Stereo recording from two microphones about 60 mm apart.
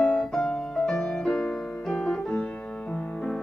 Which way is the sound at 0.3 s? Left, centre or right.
Centre.